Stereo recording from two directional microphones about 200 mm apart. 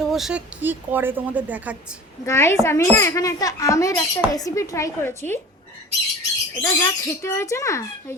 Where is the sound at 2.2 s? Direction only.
15° left (ahead or behind).